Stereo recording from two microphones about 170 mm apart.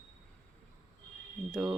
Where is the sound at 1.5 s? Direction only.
5° right (ahead or behind).